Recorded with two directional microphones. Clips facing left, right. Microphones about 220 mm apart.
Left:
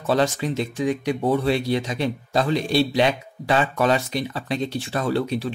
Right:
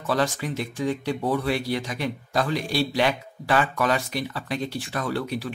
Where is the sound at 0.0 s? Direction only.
25° left (ahead or behind).